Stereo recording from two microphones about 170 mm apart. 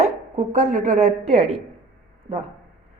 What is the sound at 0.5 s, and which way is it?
A woman's voice, 45° right (ahead or behind).